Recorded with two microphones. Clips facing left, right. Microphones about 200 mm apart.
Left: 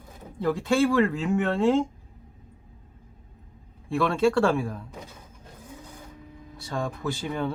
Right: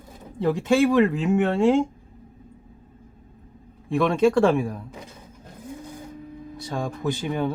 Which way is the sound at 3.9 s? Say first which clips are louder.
Right 3 dB; 20° right (ahead or behind).